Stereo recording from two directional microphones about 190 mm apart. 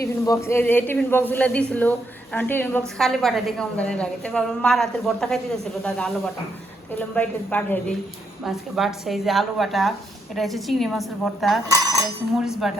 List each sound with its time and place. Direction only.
0.0 s a woman's voice: 15° left (ahead or behind)
11.7 s a sound: 15° right (ahead or behind)
12.4 s speech: centre (ahead or behind)